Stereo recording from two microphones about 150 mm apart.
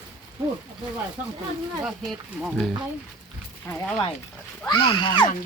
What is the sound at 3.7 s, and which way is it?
Speech, 20° left (ahead or behind).